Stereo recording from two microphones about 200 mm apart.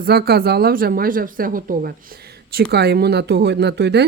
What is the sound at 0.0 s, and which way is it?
Speech, 50° right (ahead or behind).